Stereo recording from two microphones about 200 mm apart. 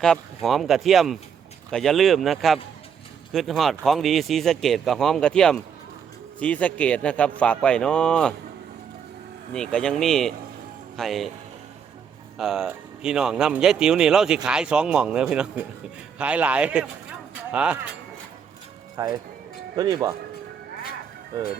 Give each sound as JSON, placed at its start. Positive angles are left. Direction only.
{"t": 0.0, "sound": "a man's voice", "side_deg": 0}
{"t": 9.5, "sound": "a man's voice", "side_deg": 5}
{"t": 12.4, "sound": "a man's voice", "side_deg": -5}
{"t": 18.9, "sound": "a man's voice", "side_deg": -20}